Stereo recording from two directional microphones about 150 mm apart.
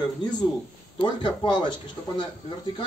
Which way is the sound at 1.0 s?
30° left (ahead or behind).